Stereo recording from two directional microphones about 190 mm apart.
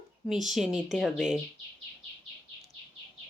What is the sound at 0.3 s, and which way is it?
Speech, centre (ahead or behind).